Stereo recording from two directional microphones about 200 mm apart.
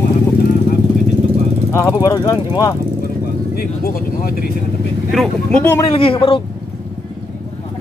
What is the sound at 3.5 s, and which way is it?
Speech, 45° left (ahead or behind).